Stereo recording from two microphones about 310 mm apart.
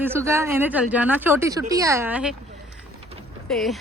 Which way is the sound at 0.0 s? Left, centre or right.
Centre.